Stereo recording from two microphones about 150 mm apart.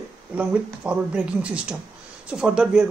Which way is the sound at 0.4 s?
5° right (ahead or behind).